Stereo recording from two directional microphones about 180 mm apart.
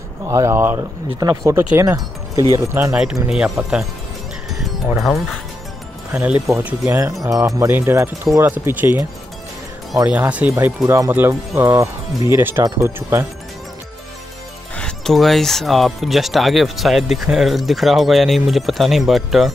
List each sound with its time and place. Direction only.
0.3 s speech: 15° right (ahead or behind)
4.9 s speech: centre (ahead or behind)
6.5 s speech: 10° right (ahead or behind)
10.0 s speech: 10° right (ahead or behind)
14.8 s speech: 5° left (ahead or behind)